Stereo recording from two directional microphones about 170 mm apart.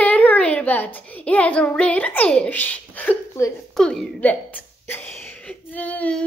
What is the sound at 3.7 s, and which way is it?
A woman's voice, 5° left (ahead or behind).